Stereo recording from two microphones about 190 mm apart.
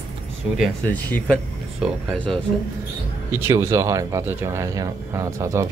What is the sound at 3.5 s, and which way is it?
Speech, 15° right (ahead or behind).